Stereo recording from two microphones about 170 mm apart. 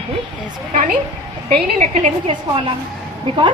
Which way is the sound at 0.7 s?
45° right (ahead or behind).